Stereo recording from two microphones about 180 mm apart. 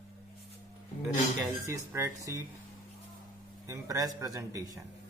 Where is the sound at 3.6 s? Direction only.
20° right (ahead or behind).